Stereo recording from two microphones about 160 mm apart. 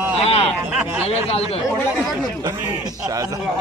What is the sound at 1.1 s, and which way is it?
Speech, 40° left (ahead or behind).